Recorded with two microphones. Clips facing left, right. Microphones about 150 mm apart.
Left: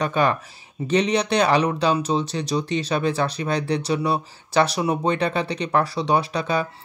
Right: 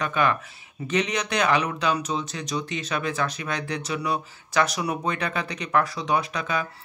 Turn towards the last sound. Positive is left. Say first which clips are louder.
# left 4 dB
turn(degrees=30)  # may be behind; listen again after turning